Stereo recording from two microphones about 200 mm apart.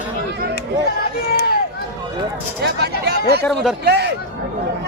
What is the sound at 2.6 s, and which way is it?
Speech, 55° right (ahead or behind).